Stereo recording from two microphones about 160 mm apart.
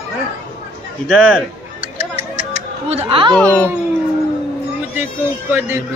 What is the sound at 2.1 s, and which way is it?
Chatter, 40° right (ahead or behind).